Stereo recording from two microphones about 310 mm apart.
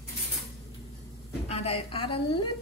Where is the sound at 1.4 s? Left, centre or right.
Centre.